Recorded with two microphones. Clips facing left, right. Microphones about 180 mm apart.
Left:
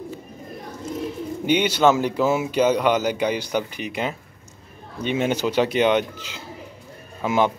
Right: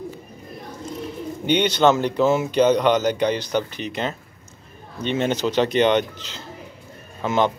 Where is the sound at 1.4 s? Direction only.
10° left (ahead or behind).